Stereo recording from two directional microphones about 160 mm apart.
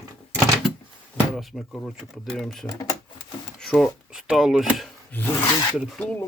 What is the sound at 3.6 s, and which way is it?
Speech, centre (ahead or behind).